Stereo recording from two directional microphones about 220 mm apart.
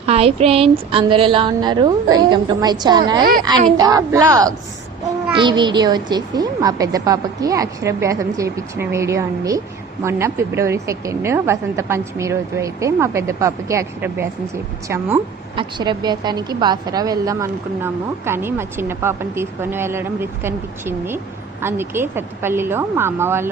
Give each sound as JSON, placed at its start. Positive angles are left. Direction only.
{"t": 0.0, "sound": "a woman's voice", "side_deg": -25}